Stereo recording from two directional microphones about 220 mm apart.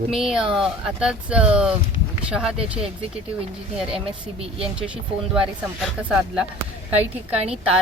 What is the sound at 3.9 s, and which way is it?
Speech, 25° right (ahead or behind).